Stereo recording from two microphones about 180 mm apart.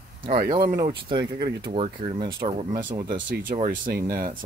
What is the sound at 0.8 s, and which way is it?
Speech, 25° right (ahead or behind).